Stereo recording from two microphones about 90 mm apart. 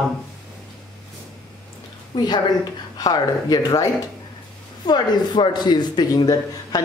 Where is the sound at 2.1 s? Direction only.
50° left (ahead or behind).